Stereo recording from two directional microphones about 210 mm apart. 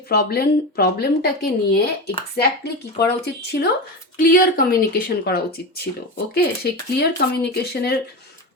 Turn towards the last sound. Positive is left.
turn(degrees=50)  # may be behind; listen again after turning